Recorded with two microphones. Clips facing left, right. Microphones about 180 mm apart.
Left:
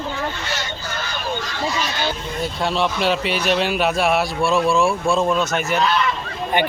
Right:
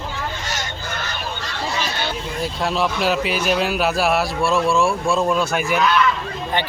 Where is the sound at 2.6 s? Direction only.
Centre (ahead or behind).